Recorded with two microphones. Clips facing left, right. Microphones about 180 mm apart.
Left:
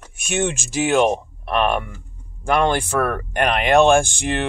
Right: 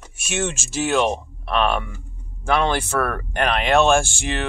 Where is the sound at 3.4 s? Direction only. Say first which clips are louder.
Left 2 dB; centre (ahead or behind).